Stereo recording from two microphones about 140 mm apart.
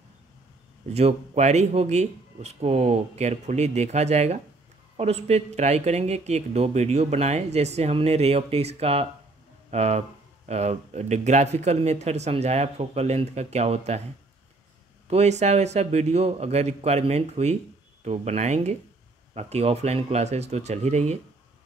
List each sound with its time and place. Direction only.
0.9 s speech: 50° right (ahead or behind)
15.0 s speech: 55° right (ahead or behind)